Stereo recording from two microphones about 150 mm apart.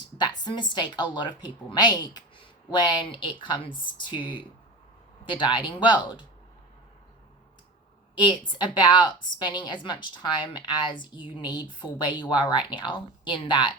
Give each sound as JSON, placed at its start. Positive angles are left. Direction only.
{"t": 0.0, "sound": "a woman's voice", "side_deg": 30}
{"t": 8.1, "sound": "speech", "side_deg": 30}